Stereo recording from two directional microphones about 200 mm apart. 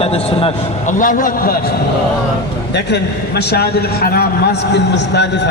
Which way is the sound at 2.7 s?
60° left (ahead or behind).